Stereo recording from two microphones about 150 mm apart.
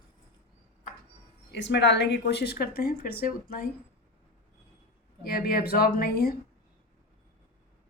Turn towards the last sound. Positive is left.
turn(degrees=90)